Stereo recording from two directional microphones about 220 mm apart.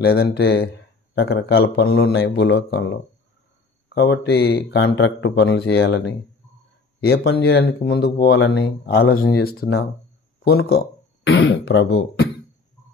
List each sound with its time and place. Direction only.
0.0 s speech: 45° left (ahead or behind)
3.9 s speech: 50° left (ahead or behind)